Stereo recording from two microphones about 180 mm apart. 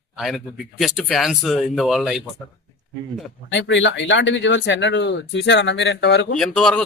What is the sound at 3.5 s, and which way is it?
Speech, 85° left.